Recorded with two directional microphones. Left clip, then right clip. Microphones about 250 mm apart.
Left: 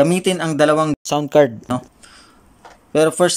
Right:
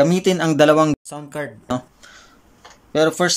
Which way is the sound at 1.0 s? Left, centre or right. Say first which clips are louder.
Left 15 dB; left.